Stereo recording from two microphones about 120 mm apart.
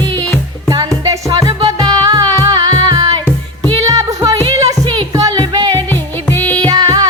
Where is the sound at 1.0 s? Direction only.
30° right (ahead or behind).